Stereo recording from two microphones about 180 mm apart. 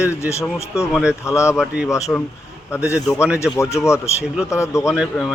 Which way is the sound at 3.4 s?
15° left (ahead or behind).